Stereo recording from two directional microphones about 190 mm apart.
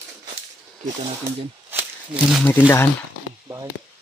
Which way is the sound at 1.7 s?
10° right (ahead or behind).